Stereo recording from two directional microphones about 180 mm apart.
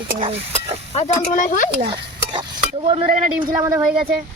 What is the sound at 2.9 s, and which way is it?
Speech, 30° right (ahead or behind).